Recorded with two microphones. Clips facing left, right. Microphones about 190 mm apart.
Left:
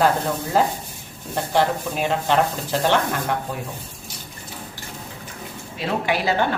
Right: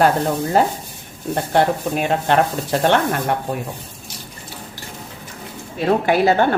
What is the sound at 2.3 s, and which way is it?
Speech, 60° right (ahead or behind).